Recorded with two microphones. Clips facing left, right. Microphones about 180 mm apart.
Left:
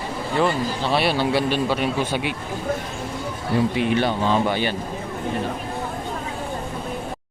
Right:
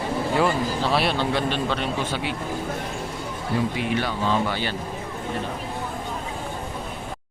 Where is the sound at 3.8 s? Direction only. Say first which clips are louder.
Left 4 dB; 25° left (ahead or behind).